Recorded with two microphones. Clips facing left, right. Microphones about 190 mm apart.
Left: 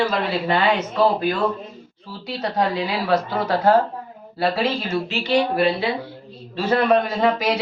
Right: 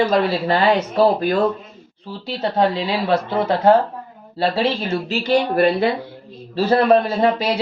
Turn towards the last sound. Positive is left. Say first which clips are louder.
# right 2 dB
turn(degrees=-30)  # may be behind; listen again after turning